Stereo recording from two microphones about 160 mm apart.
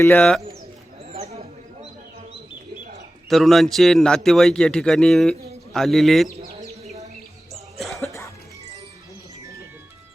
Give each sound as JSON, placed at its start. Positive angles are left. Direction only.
{"t": 0.0, "sound": "speech", "side_deg": 10}
{"t": 1.1, "sound": "a sound", "side_deg": -40}
{"t": 3.2, "sound": "a man's voice", "side_deg": 0}
{"t": 7.8, "sound": "music", "side_deg": 0}